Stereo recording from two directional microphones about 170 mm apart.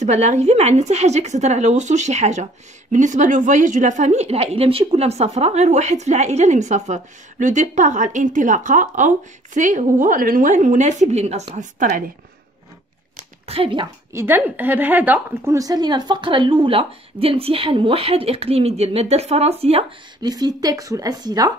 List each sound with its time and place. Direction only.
0.0 s a woman's voice: 40° right (ahead or behind)
13.1 s a sound: 35° right (ahead or behind)
14.1 s a woman's voice: 10° right (ahead or behind); by 19.8 s 35° right (ahead or behind)
20.2 s a woman's voice: 25° right (ahead or behind)